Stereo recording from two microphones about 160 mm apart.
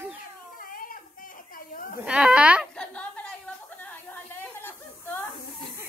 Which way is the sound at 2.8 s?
5° left (ahead or behind).